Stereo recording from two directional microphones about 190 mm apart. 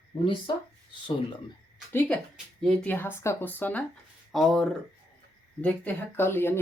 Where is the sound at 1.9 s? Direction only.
5° left (ahead or behind).